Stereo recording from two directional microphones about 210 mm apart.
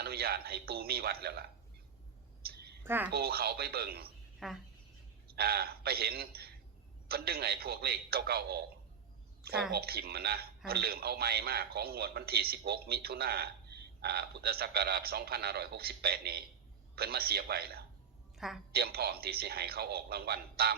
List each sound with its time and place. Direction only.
0.0 s a man's voice: 50° right (ahead or behind)
2.4 s a sound: 50° right (ahead or behind)
2.8 s a woman's voice: 10° right (ahead or behind)
3.1 s a man's voice: 50° right (ahead or behind)
4.4 s speech: centre (ahead or behind)
5.3 s a man's voice: 50° right (ahead or behind)
9.7 s a man's voice: 45° right (ahead or behind)
18.3 s a woman's voice: centre (ahead or behind)
18.7 s a man's voice: 45° right (ahead or behind)